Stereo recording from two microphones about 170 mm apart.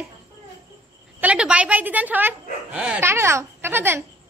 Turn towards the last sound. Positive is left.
turn(degrees=-15)  # may be behind; listen again after turning